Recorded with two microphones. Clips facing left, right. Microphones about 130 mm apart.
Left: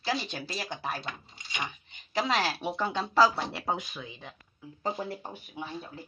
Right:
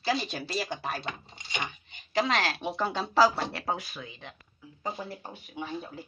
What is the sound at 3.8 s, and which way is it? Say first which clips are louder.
Speech: left 1 dB; 20° left (ahead or behind).